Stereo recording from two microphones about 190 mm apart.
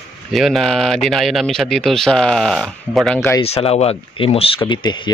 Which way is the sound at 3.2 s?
15° left (ahead or behind).